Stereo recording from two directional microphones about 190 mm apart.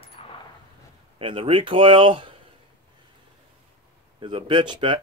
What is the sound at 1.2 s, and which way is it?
Speech, 25° right (ahead or behind).